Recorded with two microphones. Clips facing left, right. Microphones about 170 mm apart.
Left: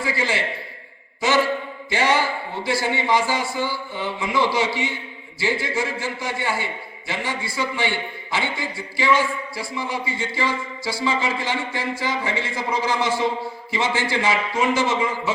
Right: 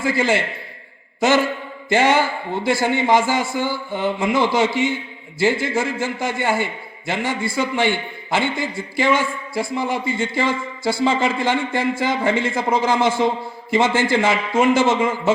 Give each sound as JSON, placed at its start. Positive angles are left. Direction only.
{"t": 0.0, "sound": "a man's voice", "side_deg": -50}
{"t": 1.9, "sound": "a man's voice", "side_deg": -50}